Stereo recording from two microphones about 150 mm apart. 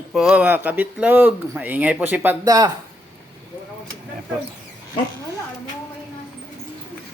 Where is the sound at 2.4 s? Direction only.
25° right (ahead or behind).